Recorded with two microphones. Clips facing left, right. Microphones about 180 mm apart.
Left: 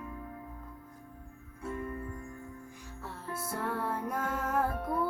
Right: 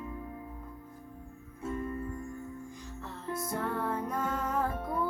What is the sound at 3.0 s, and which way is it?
Music, 10° left (ahead or behind).